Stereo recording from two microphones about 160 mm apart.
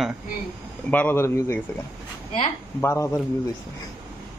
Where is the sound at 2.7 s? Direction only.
15° left (ahead or behind).